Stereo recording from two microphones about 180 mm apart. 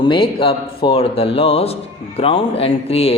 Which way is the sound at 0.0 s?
30° left (ahead or behind).